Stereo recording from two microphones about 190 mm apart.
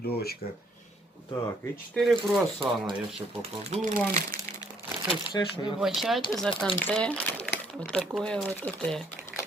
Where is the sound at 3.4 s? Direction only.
35° right (ahead or behind).